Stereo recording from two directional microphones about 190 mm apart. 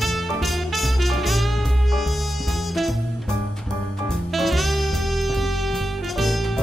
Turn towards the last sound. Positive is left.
turn(degrees=0)  # may be behind; listen again after turning